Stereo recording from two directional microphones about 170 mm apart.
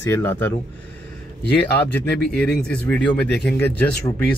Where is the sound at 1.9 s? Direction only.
10° left (ahead or behind).